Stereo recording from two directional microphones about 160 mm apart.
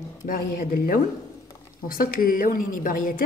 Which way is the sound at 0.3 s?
70° left (ahead or behind).